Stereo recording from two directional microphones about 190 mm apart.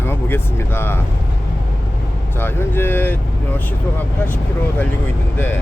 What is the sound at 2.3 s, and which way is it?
Speech, 10° left (ahead or behind).